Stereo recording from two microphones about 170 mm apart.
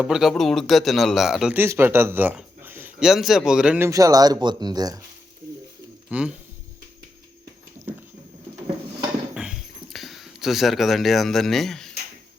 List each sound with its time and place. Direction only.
0.0 s a man's voice: 5° right (ahead or behind)
3.8 s speech: 20° right (ahead or behind)
6.1 s speech: 5° right (ahead or behind)
9.3 s a sound: 5° right (ahead or behind)